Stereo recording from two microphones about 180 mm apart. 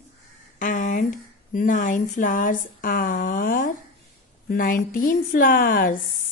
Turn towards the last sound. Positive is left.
turn(degrees=50)  # may be behind; listen again after turning